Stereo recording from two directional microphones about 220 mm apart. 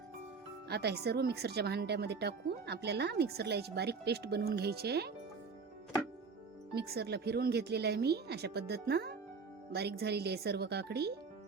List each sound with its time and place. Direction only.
0.7 s speech: 50° right (ahead or behind)
6.7 s speech: 45° right (ahead or behind)